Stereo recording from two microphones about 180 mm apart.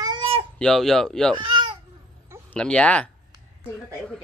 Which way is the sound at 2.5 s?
5° left (ahead or behind).